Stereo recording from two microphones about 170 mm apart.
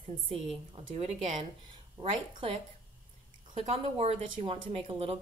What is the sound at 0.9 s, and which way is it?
Speech, 40° right (ahead or behind).